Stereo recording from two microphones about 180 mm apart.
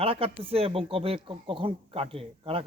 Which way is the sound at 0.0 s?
30° right (ahead or behind).